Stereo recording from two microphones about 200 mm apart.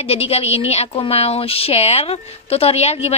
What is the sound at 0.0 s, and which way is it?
A woman's voice, 30° left (ahead or behind).